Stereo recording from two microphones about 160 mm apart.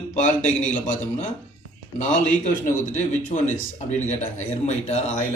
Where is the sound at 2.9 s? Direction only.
50° left (ahead or behind).